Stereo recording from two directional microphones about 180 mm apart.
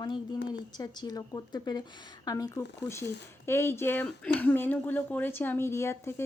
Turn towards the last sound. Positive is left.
turn(degrees=15)  # may be behind; listen again after turning